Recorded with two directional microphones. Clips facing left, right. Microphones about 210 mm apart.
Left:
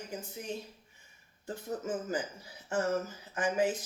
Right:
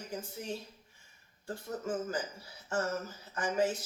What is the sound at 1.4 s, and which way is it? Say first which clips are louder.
Speech: left 1 dB; 20° left (ahead or behind).